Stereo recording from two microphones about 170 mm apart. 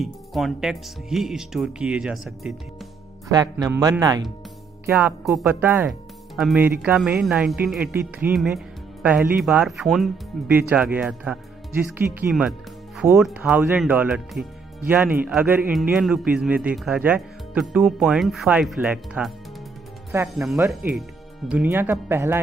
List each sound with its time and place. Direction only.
0.0 s a man's voice: centre (ahead or behind)
3.3 s speech: 20° right (ahead or behind)
4.8 s a man's voice: 10° right (ahead or behind)
20.1 s speech: 15° right (ahead or behind)